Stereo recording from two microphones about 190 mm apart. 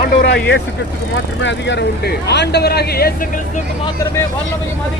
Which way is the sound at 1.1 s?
70° left (ahead or behind).